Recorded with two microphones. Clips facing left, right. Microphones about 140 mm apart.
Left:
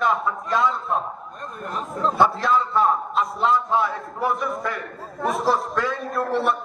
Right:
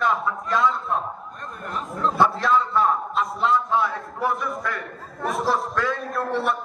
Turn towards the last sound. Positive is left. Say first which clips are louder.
# left 2 dB
turn(degrees=0)  # may be behind; listen again after turning